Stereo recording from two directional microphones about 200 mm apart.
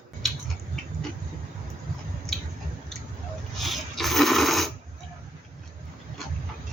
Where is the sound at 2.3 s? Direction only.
Centre (ahead or behind).